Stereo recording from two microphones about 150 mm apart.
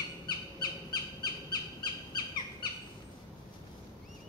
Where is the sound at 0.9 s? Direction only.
30° left (ahead or behind).